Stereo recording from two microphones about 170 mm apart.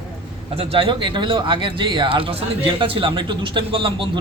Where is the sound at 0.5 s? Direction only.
30° right (ahead or behind).